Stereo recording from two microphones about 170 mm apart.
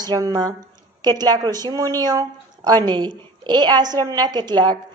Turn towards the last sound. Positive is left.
turn(degrees=-25)  # may be behind; listen again after turning